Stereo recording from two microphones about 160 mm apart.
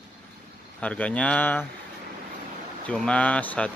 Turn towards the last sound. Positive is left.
turn(degrees=10)  # may be behind; listen again after turning